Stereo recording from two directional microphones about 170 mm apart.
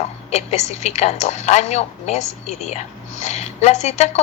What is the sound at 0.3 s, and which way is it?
A woman's voice, 40° left (ahead or behind).